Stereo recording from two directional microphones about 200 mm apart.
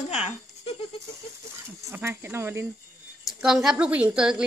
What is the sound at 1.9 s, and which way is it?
Speech, 10° right (ahead or behind).